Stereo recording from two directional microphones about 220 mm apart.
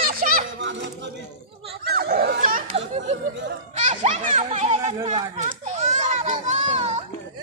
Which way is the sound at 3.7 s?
30° right (ahead or behind).